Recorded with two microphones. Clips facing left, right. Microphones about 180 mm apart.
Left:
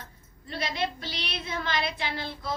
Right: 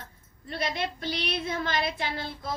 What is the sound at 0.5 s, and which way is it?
Speech, 50° right (ahead or behind).